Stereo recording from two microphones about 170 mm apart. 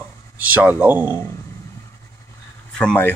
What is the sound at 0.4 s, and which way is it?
Speech, 10° right (ahead or behind).